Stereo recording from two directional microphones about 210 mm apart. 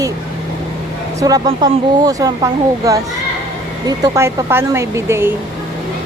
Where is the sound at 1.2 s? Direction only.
15° right (ahead or behind).